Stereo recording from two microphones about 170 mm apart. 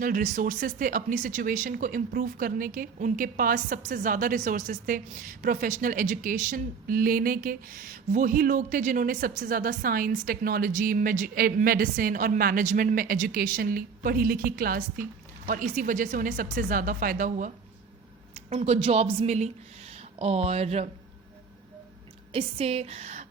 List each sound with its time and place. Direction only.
0.0 s speech: 50° right (ahead or behind)
18.5 s speech: 40° right (ahead or behind)
22.3 s speech: 35° right (ahead or behind)